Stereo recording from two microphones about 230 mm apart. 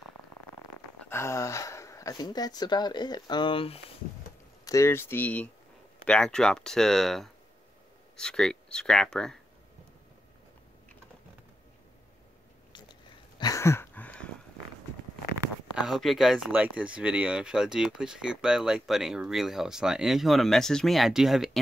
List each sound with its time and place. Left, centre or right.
1.0 s speech: centre
4.6 s speech: centre
13.4 s a sound: centre
15.3 s speech: centre